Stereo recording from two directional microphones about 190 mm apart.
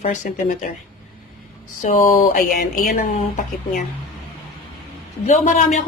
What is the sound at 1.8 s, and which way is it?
A woman's voice, 40° left (ahead or behind).